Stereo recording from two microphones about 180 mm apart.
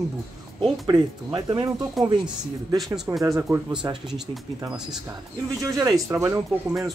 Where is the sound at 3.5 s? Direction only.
15° right (ahead or behind).